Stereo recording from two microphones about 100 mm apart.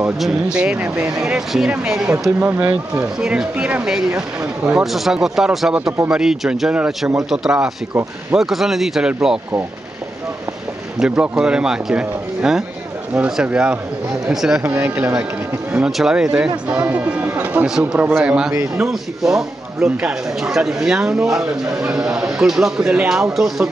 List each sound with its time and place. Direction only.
0.2 s speech: 10° right (ahead or behind)
11.0 s speech: 10° right (ahead or behind)
14.6 s speech: 20° right (ahead or behind)
15.8 s speech: 5° right (ahead or behind)